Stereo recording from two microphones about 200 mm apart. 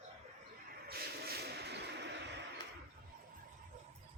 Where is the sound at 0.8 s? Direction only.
50° right (ahead or behind).